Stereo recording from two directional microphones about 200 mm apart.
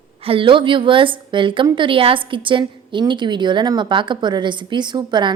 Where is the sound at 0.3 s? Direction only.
25° right (ahead or behind).